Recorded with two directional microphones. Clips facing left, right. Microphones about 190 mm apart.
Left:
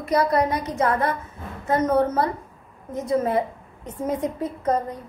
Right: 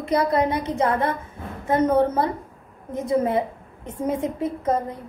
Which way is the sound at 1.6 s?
15° right (ahead or behind).